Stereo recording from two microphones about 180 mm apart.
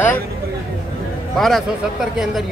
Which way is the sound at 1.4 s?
Centre (ahead or behind).